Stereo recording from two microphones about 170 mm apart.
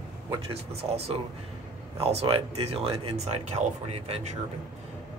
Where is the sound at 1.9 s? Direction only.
35° right (ahead or behind).